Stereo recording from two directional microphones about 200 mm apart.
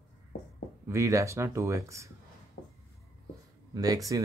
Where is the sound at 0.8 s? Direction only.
15° right (ahead or behind).